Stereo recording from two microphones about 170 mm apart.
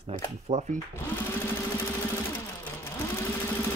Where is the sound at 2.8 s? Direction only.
15° left (ahead or behind).